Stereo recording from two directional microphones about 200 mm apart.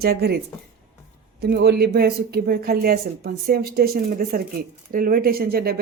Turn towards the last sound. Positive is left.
turn(degrees=-50)  # may be behind; listen again after turning